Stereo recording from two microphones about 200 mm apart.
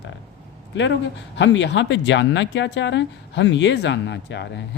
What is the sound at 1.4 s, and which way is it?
Speech, 65° left (ahead or behind).